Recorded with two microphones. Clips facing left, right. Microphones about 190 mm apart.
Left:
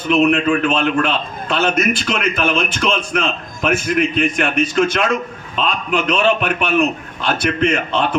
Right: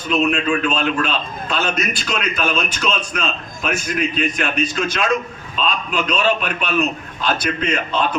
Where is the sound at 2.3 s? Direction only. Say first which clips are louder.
Left 3 dB; 55° left (ahead or behind).